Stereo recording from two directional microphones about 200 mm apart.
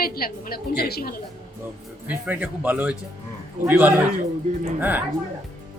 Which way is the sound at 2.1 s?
10° right (ahead or behind).